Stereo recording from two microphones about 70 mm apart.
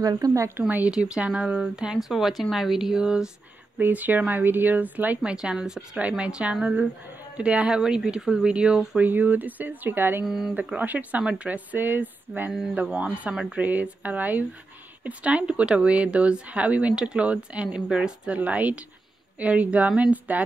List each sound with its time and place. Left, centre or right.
0.0 s a woman's voice: right
0.6 s speech: right
0.9 s speech: centre
3.7 s speech: right
5.3 s speech: centre; by 10.2 s right
10.2 s speech: centre
10.5 s speech: right
13.6 s speech: right